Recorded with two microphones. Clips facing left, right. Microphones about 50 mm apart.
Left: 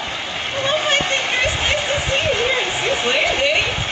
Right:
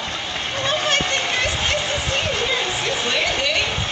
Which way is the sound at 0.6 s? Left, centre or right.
Centre.